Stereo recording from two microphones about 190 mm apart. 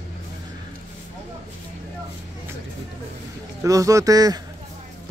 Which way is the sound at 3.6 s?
15° right (ahead or behind).